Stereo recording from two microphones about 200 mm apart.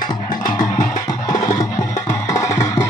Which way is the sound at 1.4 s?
20° left (ahead or behind).